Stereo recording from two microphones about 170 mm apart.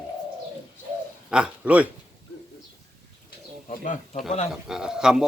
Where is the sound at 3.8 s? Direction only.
50° left (ahead or behind).